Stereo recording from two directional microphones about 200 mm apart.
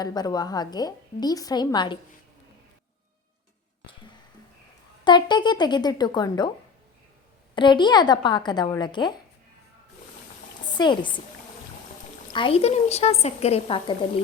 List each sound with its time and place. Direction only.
0.0 s a woman's voice: 20° left (ahead or behind)
5.0 s a woman's voice: 20° left (ahead or behind)
7.5 s a woman's voice: 25° left (ahead or behind)
10.8 s a woman's voice: 25° left (ahead or behind)
12.3 s a woman's voice: 25° left (ahead or behind)